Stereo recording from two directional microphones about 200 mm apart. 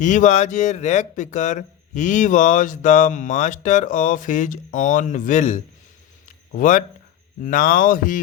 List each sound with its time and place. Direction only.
0.0 s speech: 40° left (ahead or behind)
6.2 s a sound: 40° left (ahead or behind)
7.4 s speech: 40° left (ahead or behind)